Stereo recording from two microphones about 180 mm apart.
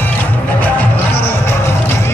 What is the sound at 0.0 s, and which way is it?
Music, 10° left (ahead or behind).